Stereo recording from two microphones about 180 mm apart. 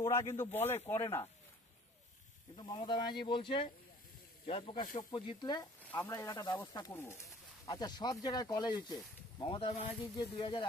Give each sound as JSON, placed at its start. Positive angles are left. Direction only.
{"t": 0.1, "sound": "speech", "side_deg": 15}
{"t": 2.5, "sound": "speech", "side_deg": 25}
{"t": 5.9, "sound": "speech", "side_deg": 15}